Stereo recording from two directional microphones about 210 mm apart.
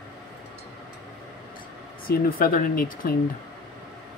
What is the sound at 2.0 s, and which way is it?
Speech, 45° left (ahead or behind).